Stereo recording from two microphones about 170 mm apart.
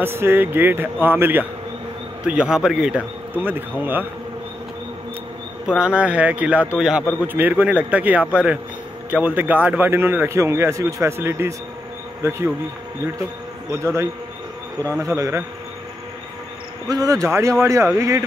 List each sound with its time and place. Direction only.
0.0 s a man's voice: 15° right (ahead or behind)
5.7 s speech: 5° right (ahead or behind)
13.7 s speech: 15° right (ahead or behind)
16.8 s speech: 20° right (ahead or behind)